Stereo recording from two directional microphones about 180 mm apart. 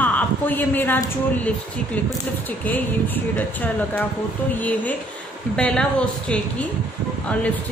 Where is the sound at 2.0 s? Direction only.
10° left (ahead or behind).